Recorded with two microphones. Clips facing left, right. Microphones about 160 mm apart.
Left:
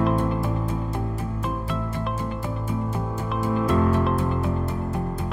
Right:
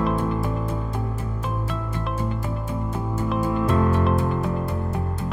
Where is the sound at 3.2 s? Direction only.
Centre (ahead or behind).